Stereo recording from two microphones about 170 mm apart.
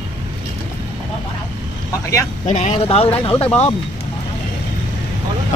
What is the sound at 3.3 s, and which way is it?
Speech, 10° left (ahead or behind).